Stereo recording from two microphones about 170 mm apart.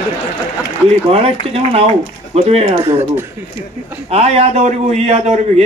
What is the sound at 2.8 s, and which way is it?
Speech, 15° right (ahead or behind).